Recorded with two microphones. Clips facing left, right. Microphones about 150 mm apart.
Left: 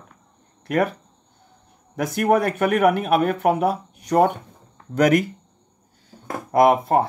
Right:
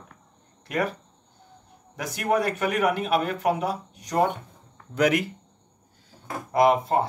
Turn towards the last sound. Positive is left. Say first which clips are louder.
# left 4 dB
turn(degrees=55)  # may be behind; listen again after turning